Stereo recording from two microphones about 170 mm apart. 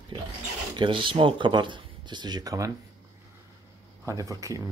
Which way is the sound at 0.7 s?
30° right (ahead or behind).